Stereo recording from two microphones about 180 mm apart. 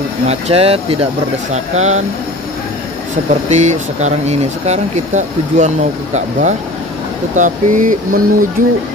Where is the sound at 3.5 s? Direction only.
40° right (ahead or behind).